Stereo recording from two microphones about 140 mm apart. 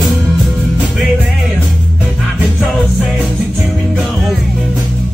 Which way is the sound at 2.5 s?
Centre (ahead or behind).